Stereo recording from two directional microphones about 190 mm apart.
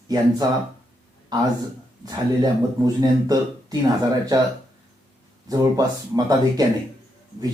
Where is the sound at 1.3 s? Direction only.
20° right (ahead or behind).